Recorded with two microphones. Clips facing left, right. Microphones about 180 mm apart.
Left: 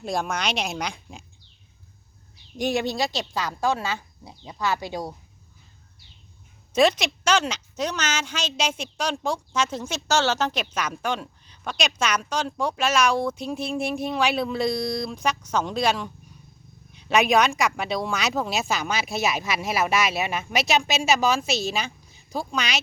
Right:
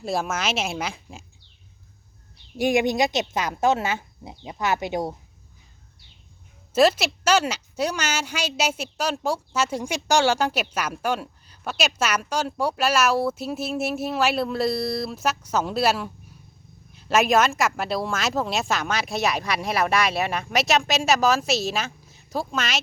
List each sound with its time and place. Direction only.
0.0 s speech: 5° right (ahead or behind)
2.6 s speech: 15° right (ahead or behind)
6.7 s a woman's voice: 5° right (ahead or behind)